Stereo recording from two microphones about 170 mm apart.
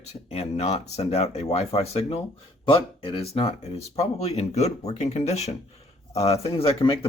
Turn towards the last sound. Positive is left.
turn(degrees=30)  # may be behind; listen again after turning